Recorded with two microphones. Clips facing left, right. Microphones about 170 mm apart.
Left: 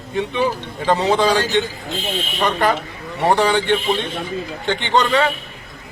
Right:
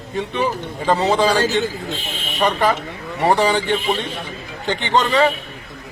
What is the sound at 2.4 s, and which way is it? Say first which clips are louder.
A man's voice: right 1 dB; 5° right (ahead or behind).